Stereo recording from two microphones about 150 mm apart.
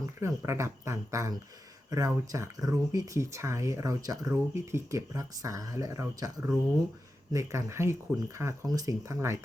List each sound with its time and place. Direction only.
0.0 s speech: 20° right (ahead or behind)